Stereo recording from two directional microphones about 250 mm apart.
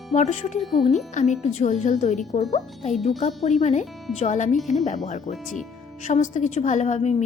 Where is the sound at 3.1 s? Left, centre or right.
Left.